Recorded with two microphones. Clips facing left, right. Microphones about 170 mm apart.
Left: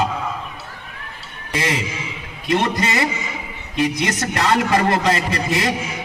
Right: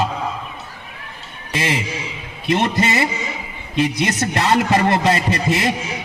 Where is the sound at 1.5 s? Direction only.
20° right (ahead or behind).